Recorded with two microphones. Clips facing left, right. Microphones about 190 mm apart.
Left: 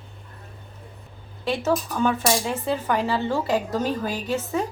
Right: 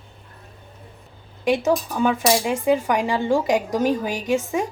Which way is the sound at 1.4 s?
15° right (ahead or behind).